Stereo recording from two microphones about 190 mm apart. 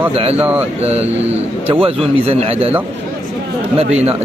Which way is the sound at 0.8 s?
35° right (ahead or behind).